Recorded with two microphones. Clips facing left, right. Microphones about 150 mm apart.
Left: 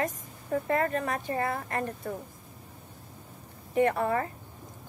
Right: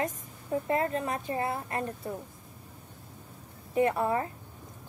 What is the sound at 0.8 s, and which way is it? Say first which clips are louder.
Speech: left 1 dB; 60° left (ahead or behind).